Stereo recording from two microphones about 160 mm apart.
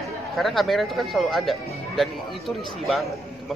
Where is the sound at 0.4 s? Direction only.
Centre (ahead or behind).